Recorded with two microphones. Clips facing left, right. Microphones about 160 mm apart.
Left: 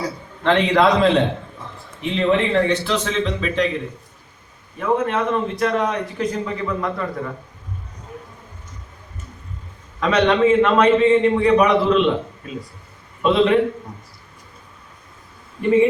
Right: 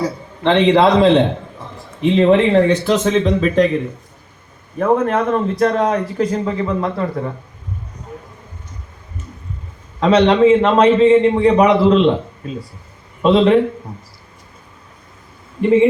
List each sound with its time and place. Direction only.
0.4 s a man's voice: 25° right (ahead or behind)
2.1 s a man's voice: 40° right (ahead or behind)
4.8 s a man's voice: 40° right (ahead or behind)
10.0 s a man's voice: 25° right (ahead or behind)
13.2 s a man's voice: 30° right (ahead or behind)